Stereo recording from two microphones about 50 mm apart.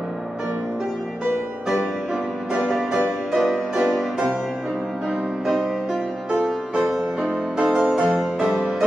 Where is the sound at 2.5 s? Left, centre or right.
Centre.